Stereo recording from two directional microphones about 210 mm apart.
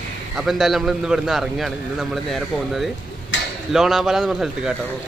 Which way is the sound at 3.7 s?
Centre (ahead or behind).